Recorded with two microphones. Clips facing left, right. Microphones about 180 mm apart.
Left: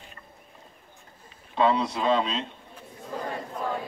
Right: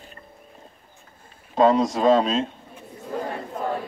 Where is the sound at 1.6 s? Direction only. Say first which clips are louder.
Right 6 dB; 45° right (ahead or behind).